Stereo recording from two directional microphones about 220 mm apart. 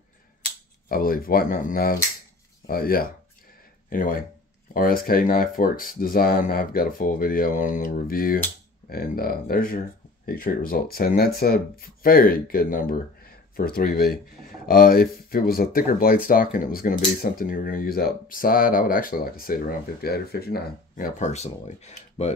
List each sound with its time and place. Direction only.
0.8 s speech: 40° left (ahead or behind)